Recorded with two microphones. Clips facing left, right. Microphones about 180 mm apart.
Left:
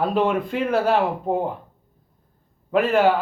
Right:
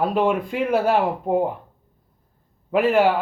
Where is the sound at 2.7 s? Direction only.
10° right (ahead or behind).